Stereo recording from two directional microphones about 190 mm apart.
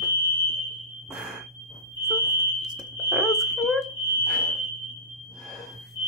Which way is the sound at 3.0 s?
Centre (ahead or behind).